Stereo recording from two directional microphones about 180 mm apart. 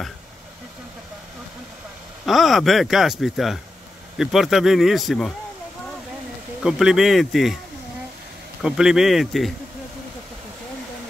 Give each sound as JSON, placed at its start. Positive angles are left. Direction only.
{"t": 2.2, "sound": "speech", "side_deg": 0}
{"t": 6.6, "sound": "speech", "side_deg": -5}
{"t": 8.6, "sound": "speech", "side_deg": -5}